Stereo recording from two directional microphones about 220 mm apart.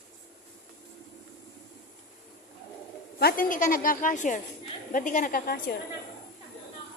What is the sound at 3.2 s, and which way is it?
A woman's voice, 40° left (ahead or behind).